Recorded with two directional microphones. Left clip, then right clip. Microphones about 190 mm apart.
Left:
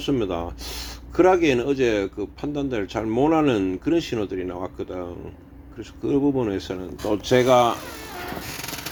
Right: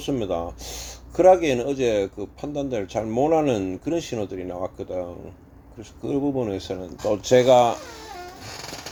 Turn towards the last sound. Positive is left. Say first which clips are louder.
# right 1 dB
turn(degrees=-15)  # may be behind; listen again after turning